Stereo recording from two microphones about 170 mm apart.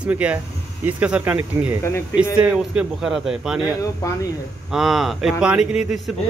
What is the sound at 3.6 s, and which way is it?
Speech, 20° left (ahead or behind).